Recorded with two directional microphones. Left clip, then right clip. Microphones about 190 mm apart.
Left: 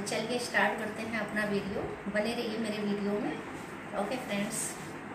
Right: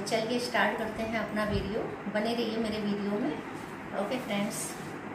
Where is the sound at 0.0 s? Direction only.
Centre (ahead or behind).